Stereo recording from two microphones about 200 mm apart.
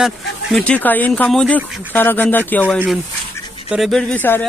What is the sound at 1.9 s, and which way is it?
Speech, 10° left (ahead or behind).